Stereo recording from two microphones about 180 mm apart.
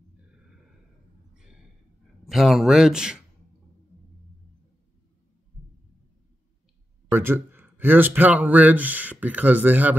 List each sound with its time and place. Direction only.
1.3 s a sound: 5° right (ahead or behind)
2.2 s speech: centre (ahead or behind)
7.1 s speech: 10° right (ahead or behind)